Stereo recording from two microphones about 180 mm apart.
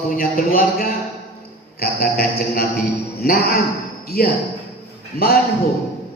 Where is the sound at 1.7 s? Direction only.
55° left (ahead or behind).